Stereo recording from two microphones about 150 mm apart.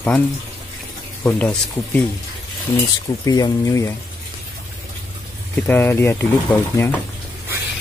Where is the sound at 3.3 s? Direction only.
25° left (ahead or behind).